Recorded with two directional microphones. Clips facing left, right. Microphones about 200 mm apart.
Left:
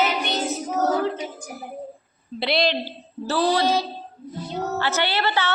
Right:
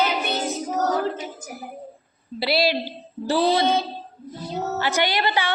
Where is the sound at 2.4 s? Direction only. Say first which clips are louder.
Right 1 dB; 5° right (ahead or behind).